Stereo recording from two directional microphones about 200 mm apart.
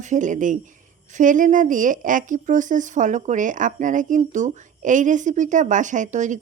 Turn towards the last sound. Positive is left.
turn(degrees=-40)  # may be behind; listen again after turning